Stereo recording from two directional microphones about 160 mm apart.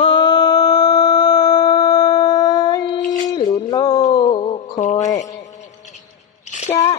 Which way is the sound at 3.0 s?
50° left (ahead or behind).